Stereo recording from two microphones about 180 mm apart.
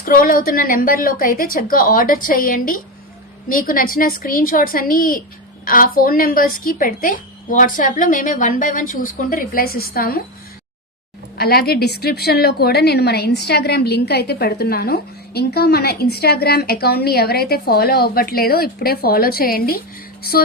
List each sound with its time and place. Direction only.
0.0 s a woman's voice: 50° left (ahead or behind)
11.3 s a woman's voice: 60° left (ahead or behind)